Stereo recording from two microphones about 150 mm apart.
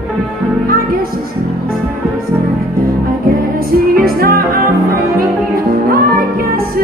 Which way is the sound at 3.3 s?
80° right.